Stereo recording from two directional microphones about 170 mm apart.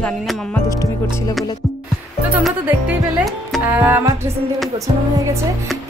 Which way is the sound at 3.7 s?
10° right (ahead or behind).